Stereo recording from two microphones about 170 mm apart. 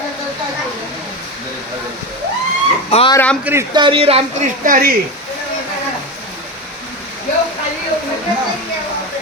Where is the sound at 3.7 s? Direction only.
30° right (ahead or behind).